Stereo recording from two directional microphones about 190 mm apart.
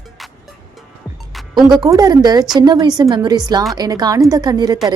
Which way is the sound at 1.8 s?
20° right (ahead or behind).